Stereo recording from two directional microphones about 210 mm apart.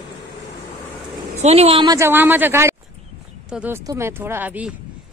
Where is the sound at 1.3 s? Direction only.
30° right (ahead or behind).